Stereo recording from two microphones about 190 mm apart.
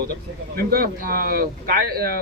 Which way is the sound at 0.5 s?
50° right (ahead or behind).